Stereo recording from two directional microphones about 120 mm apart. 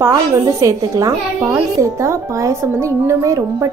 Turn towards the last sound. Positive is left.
turn(degrees=-25)  # may be behind; listen again after turning